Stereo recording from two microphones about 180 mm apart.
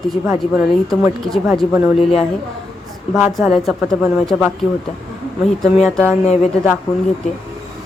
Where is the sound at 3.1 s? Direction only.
Centre (ahead or behind).